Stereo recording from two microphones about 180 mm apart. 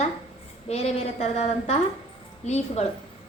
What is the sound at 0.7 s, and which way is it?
A woman's voice, 35° left (ahead or behind).